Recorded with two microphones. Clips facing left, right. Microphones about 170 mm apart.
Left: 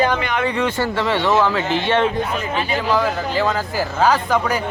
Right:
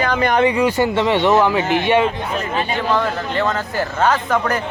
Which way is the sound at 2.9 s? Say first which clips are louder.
Left 2 dB; 5° left (ahead or behind).